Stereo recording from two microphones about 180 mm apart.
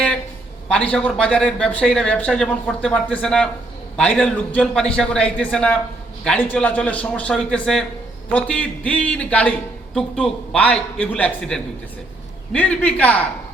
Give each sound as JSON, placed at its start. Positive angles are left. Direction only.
{"t": 0.7, "sound": "a man's voice", "side_deg": 5}